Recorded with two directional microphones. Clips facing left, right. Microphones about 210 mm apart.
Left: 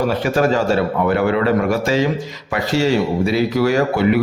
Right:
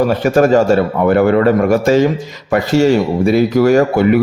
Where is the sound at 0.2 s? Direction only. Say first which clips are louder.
Right 6 dB; 45° right (ahead or behind).